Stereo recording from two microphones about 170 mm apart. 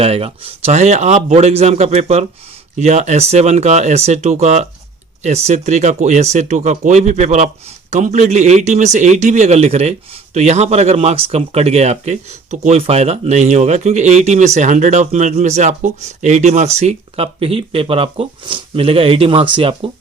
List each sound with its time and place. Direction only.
0.0 s speech: 35° right (ahead or behind)